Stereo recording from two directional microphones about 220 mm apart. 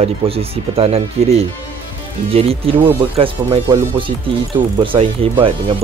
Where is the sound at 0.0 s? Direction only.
25° right (ahead or behind).